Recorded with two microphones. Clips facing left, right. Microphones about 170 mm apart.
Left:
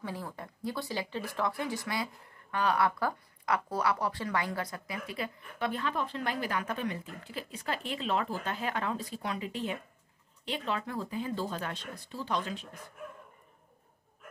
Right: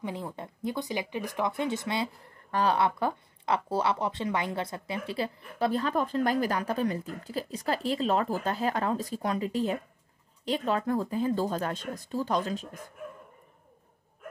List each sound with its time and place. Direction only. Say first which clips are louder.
0.0 s speech: right 4 dB; 20° right (ahead or behind); by 12.8 s 40° right (ahead or behind)